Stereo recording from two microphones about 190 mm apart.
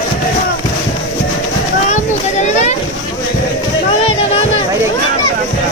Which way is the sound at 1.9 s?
35° left (ahead or behind).